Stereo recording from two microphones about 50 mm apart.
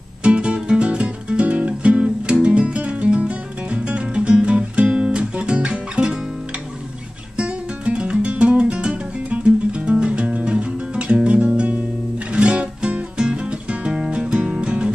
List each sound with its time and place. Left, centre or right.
0.2 s music: right
7.3 s music: right